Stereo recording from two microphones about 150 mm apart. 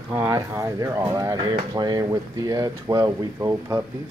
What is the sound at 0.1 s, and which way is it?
Speech, 20° right (ahead or behind).